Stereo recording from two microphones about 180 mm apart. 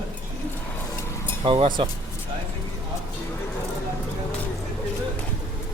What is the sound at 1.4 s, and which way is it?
Speech, 30° right (ahead or behind).